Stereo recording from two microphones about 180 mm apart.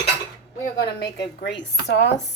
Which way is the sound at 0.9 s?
65° left (ahead or behind).